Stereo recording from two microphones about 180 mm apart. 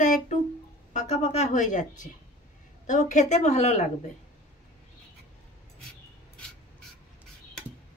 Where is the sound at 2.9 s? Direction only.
40° left (ahead or behind).